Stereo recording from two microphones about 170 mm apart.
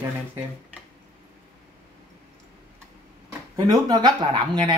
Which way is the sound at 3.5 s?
25° right (ahead or behind).